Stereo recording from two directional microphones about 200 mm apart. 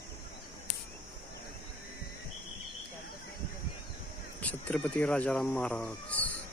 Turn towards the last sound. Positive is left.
turn(degrees=5)  # may be behind; listen again after turning